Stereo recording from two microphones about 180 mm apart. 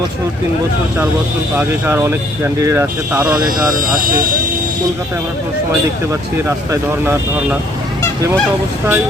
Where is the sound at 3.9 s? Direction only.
50° right (ahead or behind).